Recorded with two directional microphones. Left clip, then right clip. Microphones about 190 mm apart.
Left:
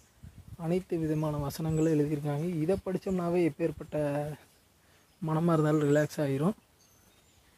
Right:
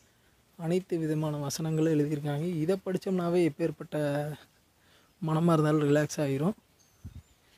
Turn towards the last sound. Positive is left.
turn(degrees=-20)  # may be behind; listen again after turning